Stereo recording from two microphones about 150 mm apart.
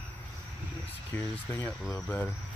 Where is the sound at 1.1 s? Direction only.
15° left (ahead or behind).